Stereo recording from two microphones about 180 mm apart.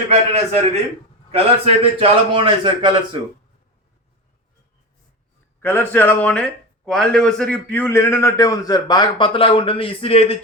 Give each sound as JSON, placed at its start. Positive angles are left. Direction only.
{"t": 0.1, "sound": "a man's voice", "side_deg": -35}
{"t": 5.6, "sound": "a man's voice", "side_deg": 10}